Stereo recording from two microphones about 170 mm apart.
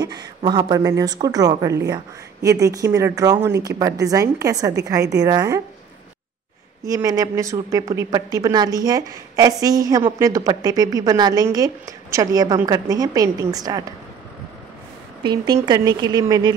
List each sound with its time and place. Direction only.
0.0 s a woman's voice: 25° right (ahead or behind)
6.8 s a woman's voice: 20° right (ahead or behind)
15.2 s a woman's voice: 25° right (ahead or behind)